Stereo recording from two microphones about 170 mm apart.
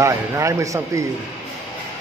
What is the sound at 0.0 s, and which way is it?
A man's voice, 20° right (ahead or behind).